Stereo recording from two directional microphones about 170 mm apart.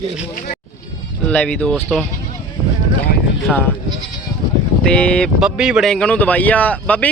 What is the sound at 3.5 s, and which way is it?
Speech, 5° left (ahead or behind).